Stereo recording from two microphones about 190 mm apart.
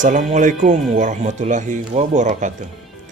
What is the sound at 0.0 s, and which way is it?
A man's voice, 40° right (ahead or behind).